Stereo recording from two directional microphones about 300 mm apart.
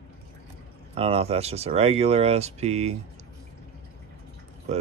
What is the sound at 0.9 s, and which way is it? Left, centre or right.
Speech, centre.